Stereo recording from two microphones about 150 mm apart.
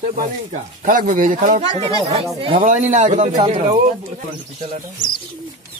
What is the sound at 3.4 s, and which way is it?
Speech, 35° right (ahead or behind).